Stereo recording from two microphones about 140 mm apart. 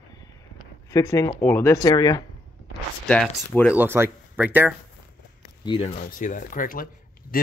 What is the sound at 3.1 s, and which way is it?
Speech, 10° left (ahead or behind).